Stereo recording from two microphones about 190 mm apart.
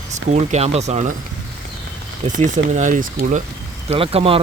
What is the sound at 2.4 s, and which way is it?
A man's voice, 40° right (ahead or behind).